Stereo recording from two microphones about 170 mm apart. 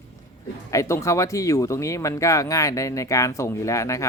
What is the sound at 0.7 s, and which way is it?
Speech, 15° left (ahead or behind).